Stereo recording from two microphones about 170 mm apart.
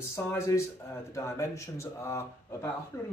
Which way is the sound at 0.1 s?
15° left (ahead or behind).